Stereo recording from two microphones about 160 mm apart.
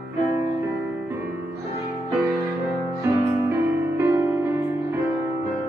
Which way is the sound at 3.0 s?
15° right (ahead or behind).